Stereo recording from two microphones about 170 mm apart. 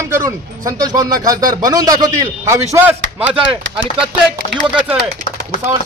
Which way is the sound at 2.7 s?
10° right (ahead or behind).